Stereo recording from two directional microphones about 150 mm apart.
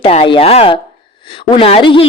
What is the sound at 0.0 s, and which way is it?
A woman's voice, 40° left (ahead or behind).